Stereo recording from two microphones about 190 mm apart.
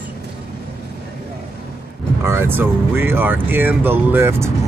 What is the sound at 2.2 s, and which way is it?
Speech, 10° right (ahead or behind).